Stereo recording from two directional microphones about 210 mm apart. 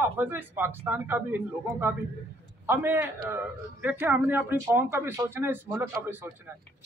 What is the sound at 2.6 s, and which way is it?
A man's voice, 10° right (ahead or behind).